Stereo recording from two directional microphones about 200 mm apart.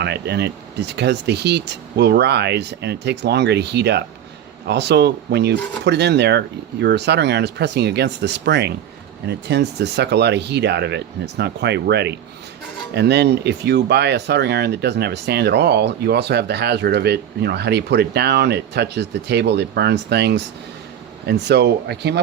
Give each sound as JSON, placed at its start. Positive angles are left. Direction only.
{"t": 0.0, "sound": "speech", "side_deg": -55}